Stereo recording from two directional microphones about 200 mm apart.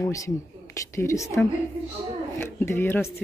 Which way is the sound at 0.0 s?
15° left (ahead or behind).